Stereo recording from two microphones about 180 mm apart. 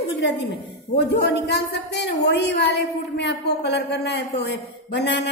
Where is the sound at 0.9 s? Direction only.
65° left (ahead or behind).